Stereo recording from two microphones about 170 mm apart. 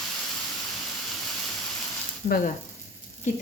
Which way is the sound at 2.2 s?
60° left (ahead or behind).